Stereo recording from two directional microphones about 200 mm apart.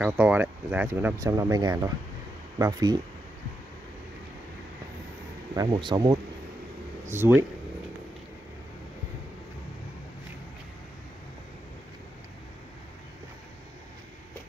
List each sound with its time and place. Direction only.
0.0 s speech: 5° right (ahead or behind)
5.6 s speech: 25° right (ahead or behind)
7.1 s speech: 10° right (ahead or behind)